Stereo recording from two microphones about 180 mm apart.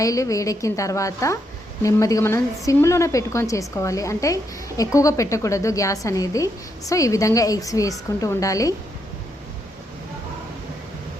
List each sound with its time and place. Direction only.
0.0 s a woman's voice: 20° left (ahead or behind)